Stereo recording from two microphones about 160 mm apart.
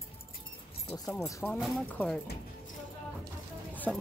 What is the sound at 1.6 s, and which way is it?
Speech, centre (ahead or behind).